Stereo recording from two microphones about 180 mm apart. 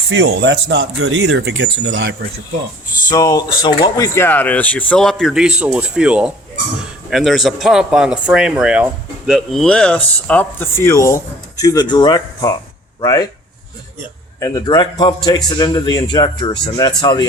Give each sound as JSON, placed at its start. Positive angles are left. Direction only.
{"t": 0.1, "sound": "speech", "side_deg": -90}
{"t": 3.1, "sound": "speech", "side_deg": 20}
{"t": 14.3, "sound": "speech", "side_deg": 20}